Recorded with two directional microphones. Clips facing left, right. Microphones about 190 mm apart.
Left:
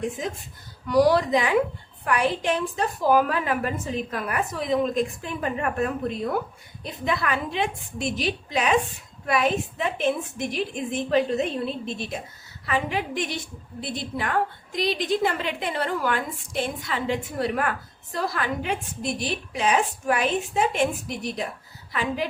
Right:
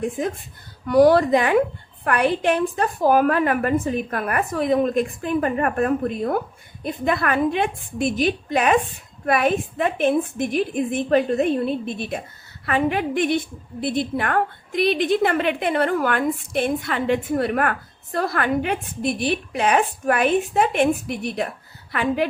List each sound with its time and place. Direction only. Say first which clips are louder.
0.9 s a woman's voice: right 5 dB; 55° right (ahead or behind)